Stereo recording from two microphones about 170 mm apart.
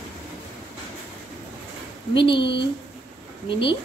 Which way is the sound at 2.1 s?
30° left (ahead or behind).